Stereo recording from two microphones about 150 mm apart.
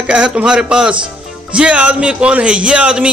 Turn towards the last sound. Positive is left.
turn(degrees=-5)  # may be behind; listen again after turning